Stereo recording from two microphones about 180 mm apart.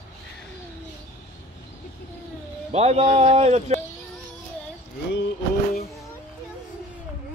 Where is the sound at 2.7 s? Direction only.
35° right (ahead or behind).